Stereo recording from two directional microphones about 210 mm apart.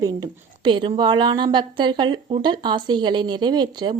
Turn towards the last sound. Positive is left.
turn(degrees=-20)  # may be behind; listen again after turning